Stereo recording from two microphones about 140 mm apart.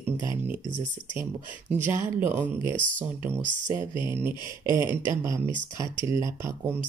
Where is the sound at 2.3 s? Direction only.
15° right (ahead or behind).